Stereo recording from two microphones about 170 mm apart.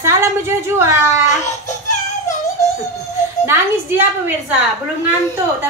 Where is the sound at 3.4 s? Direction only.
15° right (ahead or behind).